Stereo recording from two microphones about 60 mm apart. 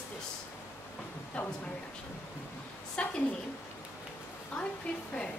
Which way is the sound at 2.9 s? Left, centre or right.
Centre.